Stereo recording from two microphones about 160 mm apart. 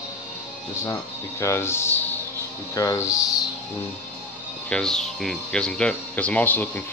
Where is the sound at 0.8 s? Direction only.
20° left (ahead or behind).